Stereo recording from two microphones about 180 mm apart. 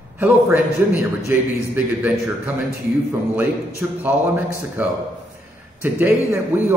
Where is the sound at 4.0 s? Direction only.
10° right (ahead or behind).